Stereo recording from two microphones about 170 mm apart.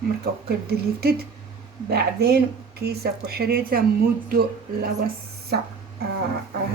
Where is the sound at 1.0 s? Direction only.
70° right (ahead or behind).